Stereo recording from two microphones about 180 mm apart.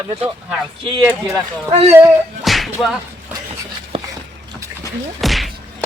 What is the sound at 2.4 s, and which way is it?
Whip, centre (ahead or behind).